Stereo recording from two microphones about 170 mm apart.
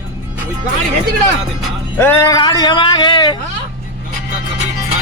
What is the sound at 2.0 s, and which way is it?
Speech, 15° left (ahead or behind).